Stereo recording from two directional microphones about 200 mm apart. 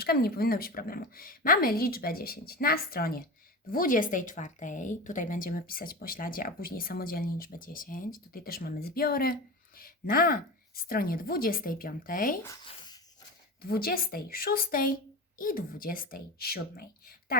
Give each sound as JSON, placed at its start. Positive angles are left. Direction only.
{"t": 0.0, "sound": "a woman's voice", "side_deg": 50}
{"t": 12.6, "sound": "a sound", "side_deg": 20}
{"t": 13.6, "sound": "a woman's voice", "side_deg": 50}